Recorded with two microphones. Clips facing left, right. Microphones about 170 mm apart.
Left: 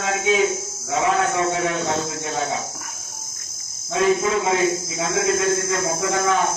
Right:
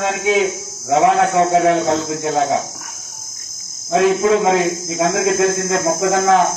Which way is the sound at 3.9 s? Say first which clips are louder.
Right 5 dB; 70° right (ahead or behind).